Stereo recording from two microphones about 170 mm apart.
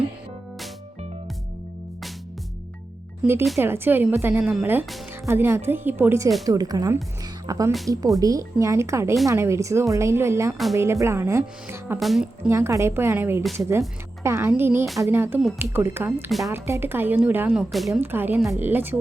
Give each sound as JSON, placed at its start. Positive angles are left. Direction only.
{"t": 3.2, "sound": "a woman's voice", "side_deg": -5}
{"t": 11.9, "sound": "a woman's voice", "side_deg": 0}
{"t": 12.5, "sound": "speech", "side_deg": -15}
{"t": 13.4, "sound": "a woman's voice", "side_deg": 0}
{"t": 14.3, "sound": "speech", "side_deg": -15}
{"t": 18.0, "sound": "speech", "side_deg": -10}